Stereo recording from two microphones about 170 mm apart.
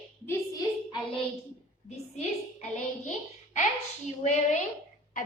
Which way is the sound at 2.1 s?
45° left (ahead or behind).